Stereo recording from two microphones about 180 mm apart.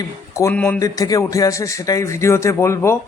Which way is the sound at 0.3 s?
15° left (ahead or behind).